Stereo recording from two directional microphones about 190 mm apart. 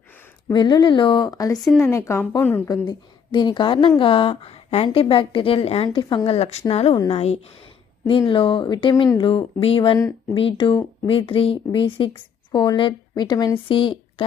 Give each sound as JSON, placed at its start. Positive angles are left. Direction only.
{"t": 0.4, "sound": "a woman's voice", "side_deg": 25}